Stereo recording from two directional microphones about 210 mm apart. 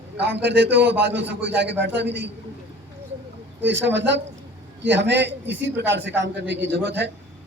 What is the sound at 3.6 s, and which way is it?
A man's voice, 60° right (ahead or behind).